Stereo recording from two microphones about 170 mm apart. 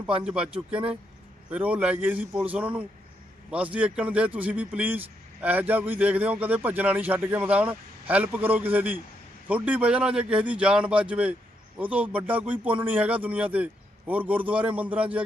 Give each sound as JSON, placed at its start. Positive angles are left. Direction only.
{"t": 0.3, "sound": "speech", "side_deg": -5}